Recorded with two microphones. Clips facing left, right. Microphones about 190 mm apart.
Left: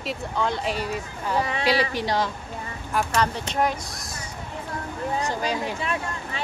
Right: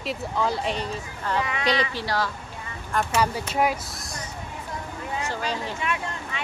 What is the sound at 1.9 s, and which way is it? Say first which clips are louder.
Speech: left 3 dB; 20° left (ahead or behind).